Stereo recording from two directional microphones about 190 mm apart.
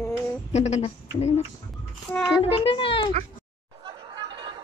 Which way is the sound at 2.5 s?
30° left (ahead or behind).